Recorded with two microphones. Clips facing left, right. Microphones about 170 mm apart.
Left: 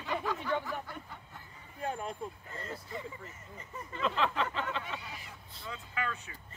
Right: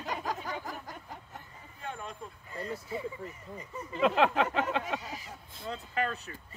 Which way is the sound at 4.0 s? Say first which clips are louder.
Right 6 dB; 65° right (ahead or behind).